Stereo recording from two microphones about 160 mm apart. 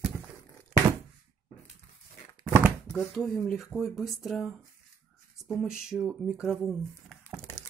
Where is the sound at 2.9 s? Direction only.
Centre (ahead or behind).